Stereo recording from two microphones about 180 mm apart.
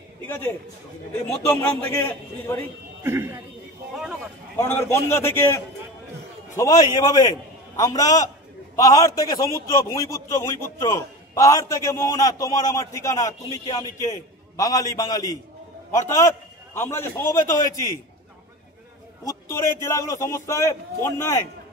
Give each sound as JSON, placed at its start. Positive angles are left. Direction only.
{"t": 1.5, "sound": "a man's voice", "side_deg": 10}
{"t": 3.0, "sound": "speech", "side_deg": -15}
{"t": 4.6, "sound": "a man's voice", "side_deg": 15}
{"t": 19.2, "sound": "a man's voice", "side_deg": 15}